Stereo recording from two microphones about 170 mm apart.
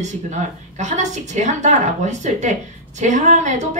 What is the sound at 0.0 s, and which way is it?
A woman's voice, 45° right (ahead or behind).